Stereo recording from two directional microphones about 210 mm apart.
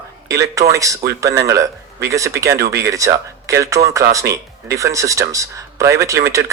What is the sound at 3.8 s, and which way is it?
Speech, 30° right (ahead or behind).